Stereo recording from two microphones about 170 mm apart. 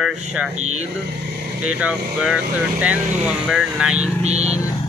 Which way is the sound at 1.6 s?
10° right (ahead or behind).